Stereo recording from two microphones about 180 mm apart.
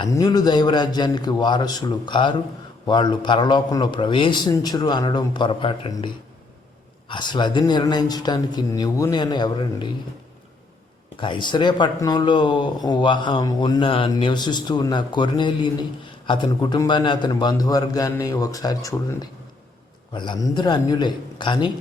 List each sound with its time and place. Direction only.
0.0 s speech: 20° left (ahead or behind)
7.1 s speech: 25° left (ahead or behind)
11.2 s speech: 25° left (ahead or behind)